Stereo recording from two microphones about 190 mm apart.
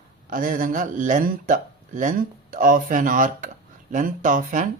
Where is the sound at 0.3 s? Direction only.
45° right (ahead or behind).